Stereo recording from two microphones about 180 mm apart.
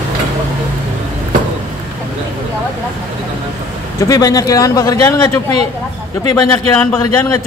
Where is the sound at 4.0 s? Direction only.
20° left (ahead or behind).